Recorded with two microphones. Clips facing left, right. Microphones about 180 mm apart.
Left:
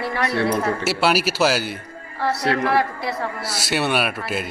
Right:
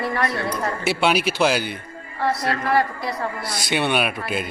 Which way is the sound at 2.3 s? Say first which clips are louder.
Left 4 dB; 70° left (ahead or behind).